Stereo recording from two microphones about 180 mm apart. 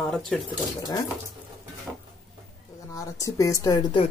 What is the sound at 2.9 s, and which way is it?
Speech, 20° left (ahead or behind).